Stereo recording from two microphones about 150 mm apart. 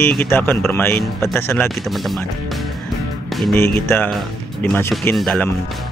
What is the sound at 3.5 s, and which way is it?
Speech, 15° left (ahead or behind).